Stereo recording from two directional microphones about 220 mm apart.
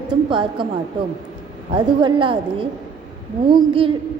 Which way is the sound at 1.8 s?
20° right (ahead or behind).